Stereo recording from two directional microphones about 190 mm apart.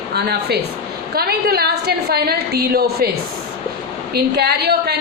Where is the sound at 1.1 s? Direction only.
55° right (ahead or behind).